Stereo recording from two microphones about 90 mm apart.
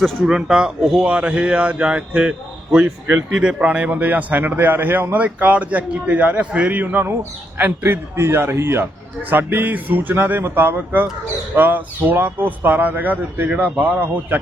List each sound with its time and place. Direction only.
0.2 s a man's voice: 10° right (ahead or behind)